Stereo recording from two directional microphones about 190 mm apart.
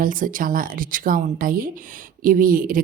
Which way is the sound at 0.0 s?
45° right (ahead or behind).